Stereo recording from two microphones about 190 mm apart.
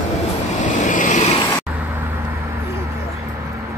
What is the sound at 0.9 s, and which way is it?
Vehicle, 40° left (ahead or behind).